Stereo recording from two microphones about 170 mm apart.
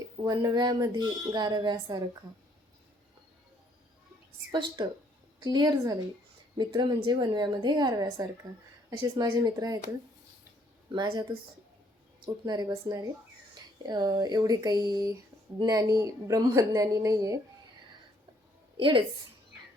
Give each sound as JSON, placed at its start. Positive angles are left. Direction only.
{"t": 0.2, "sound": "a woman's voice", "side_deg": -25}
{"t": 4.5, "sound": "a woman's voice", "side_deg": -25}
{"t": 10.9, "sound": "a woman's voice", "side_deg": -25}
{"t": 18.8, "sound": "a woman's voice", "side_deg": -30}